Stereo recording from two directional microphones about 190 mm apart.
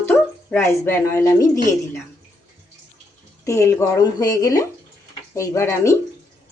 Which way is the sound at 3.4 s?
15° left (ahead or behind).